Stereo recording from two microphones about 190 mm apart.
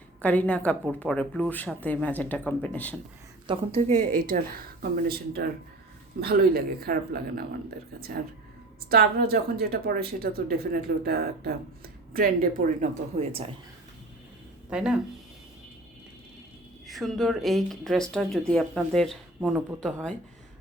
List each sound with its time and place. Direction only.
0.2 s a woman's voice: 5° left (ahead or behind)
3.4 s a woman's voice: 30° right (ahead or behind); by 7.4 s 55° right (ahead or behind)
8.9 s speech: 55° right (ahead or behind); by 13.4 s 35° right (ahead or behind)
14.7 s speech: 5° right (ahead or behind)
16.8 s speech: centre (ahead or behind)